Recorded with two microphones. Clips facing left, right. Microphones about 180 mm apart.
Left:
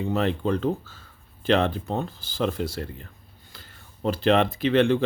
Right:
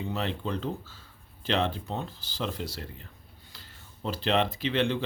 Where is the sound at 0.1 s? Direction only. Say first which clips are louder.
Left 9 dB; 50° left (ahead or behind).